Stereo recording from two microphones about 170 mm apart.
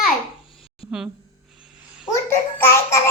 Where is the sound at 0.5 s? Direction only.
30° left (ahead or behind).